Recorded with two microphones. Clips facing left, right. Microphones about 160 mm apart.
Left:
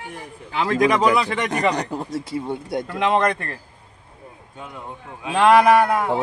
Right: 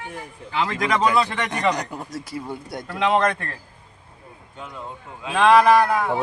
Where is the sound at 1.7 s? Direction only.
30° left (ahead or behind).